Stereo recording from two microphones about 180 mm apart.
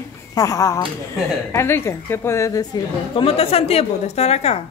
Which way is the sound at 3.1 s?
30° left (ahead or behind).